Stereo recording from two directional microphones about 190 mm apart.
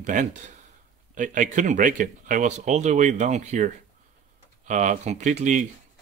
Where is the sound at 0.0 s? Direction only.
40° right (ahead or behind).